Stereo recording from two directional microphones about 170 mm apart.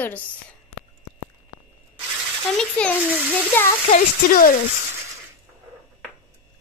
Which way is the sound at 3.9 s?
55° left (ahead or behind).